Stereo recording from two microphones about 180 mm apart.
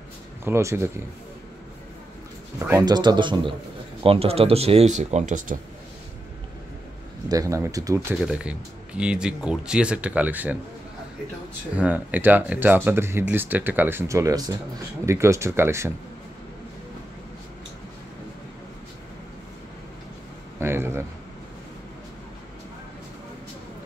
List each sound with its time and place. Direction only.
0.5 s speech: 15° right (ahead or behind)
2.7 s speech: 25° right (ahead or behind); by 5.6 s 45° right (ahead or behind)
7.2 s speech: 20° right (ahead or behind)
8.2 s speech: 5° right (ahead or behind)
11.7 s speech: 10° right (ahead or behind)
20.5 s a man's voice: 15° right (ahead or behind)